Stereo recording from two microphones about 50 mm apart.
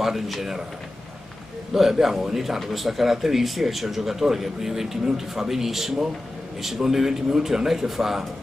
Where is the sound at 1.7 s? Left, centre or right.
Centre.